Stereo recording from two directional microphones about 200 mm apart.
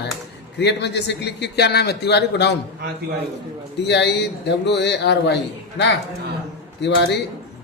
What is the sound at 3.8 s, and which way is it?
Speech, 60° left (ahead or behind).